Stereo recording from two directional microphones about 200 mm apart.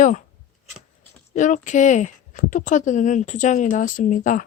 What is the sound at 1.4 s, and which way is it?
Speech, 40° left (ahead or behind).